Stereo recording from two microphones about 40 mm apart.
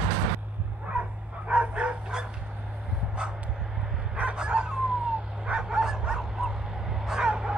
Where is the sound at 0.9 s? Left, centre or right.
Right.